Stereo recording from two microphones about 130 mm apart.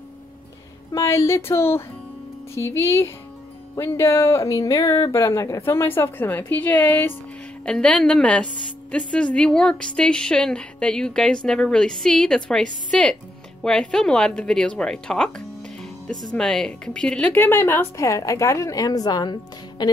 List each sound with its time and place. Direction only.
0.9 s a woman's voice: 25° left (ahead or behind)